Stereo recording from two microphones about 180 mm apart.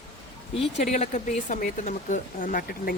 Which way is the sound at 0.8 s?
40° left (ahead or behind).